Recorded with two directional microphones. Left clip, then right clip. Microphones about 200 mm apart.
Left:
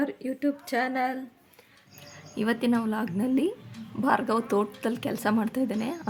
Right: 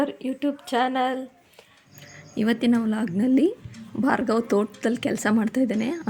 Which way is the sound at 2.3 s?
10° right (ahead or behind).